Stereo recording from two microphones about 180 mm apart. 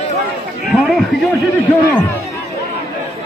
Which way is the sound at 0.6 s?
Centre (ahead or behind).